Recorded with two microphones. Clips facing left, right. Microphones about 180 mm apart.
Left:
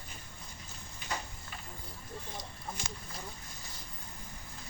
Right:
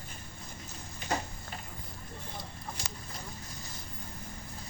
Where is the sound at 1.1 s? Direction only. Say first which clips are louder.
Right 6 dB; 45° right (ahead or behind).